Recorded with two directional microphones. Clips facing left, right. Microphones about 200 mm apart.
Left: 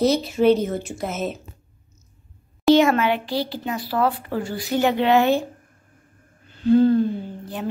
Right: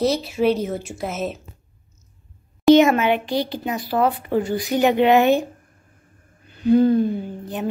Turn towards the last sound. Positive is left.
turn(degrees=-20)  # may be behind; listen again after turning